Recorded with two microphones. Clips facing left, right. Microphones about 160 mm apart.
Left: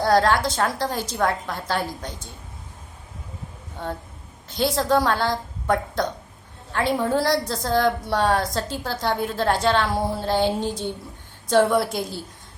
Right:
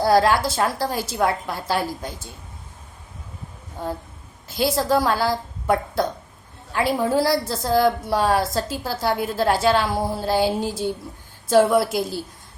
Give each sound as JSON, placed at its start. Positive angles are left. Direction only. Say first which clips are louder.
{"t": 0.0, "sound": "a woman's voice", "louder": "right 1 dB", "side_deg": -10}
{"t": 4.4, "sound": "a woman's voice", "louder": "right 1 dB", "side_deg": -5}